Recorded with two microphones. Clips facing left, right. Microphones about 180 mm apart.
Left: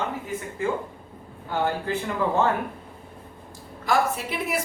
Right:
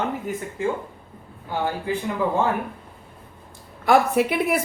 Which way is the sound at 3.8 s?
60° right (ahead or behind).